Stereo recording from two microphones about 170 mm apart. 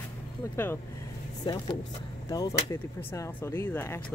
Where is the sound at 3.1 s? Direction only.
15° left (ahead or behind).